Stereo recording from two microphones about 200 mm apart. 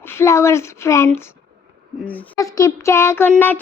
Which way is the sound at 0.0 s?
10° left (ahead or behind).